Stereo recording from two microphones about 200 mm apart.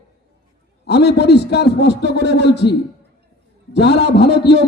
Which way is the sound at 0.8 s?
55° left (ahead or behind).